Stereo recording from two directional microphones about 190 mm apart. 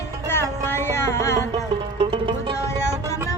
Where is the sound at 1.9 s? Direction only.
25° right (ahead or behind).